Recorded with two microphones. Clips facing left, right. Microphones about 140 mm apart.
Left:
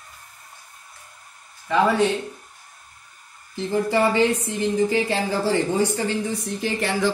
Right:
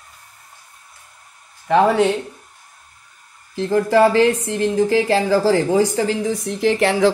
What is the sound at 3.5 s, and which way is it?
Speech, 90° right.